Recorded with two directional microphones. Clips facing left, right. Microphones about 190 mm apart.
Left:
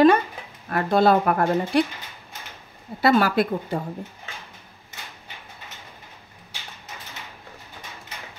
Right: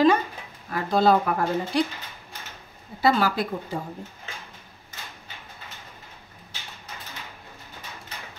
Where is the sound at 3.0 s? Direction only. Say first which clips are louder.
Left 3 dB; 65° left (ahead or behind).